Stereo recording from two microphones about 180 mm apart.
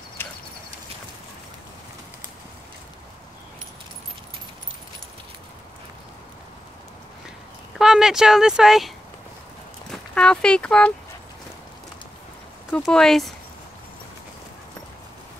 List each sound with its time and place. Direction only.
7.7 s speech: 5° right (ahead or behind)
12.7 s speech: 5° left (ahead or behind)